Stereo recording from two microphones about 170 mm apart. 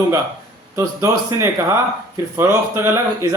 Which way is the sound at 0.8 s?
20° right (ahead or behind).